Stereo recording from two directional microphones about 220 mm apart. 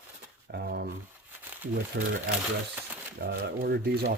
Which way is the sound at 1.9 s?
45° right (ahead or behind).